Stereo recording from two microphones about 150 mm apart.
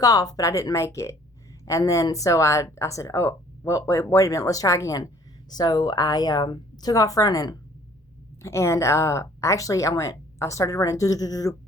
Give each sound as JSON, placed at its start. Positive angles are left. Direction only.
{"t": 0.0, "sound": "speech", "side_deg": 25}